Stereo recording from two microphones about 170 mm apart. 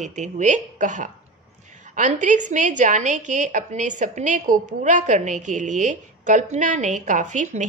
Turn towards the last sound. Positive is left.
turn(degrees=-45)  # may be behind; listen again after turning